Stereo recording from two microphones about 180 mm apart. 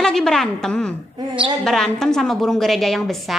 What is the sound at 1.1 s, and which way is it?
Speech, 30° right (ahead or behind).